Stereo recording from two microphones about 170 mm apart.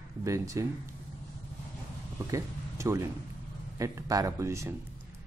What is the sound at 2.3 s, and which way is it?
Speech, 15° right (ahead or behind).